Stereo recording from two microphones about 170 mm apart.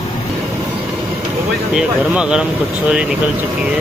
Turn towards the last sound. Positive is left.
turn(degrees=-5)  # may be behind; listen again after turning